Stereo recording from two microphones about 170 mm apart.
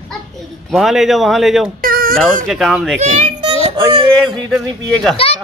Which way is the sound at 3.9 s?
25° right (ahead or behind).